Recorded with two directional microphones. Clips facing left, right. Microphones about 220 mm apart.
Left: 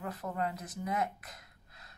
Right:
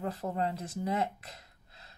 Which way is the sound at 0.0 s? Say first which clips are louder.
Right 3 dB; 30° right (ahead or behind).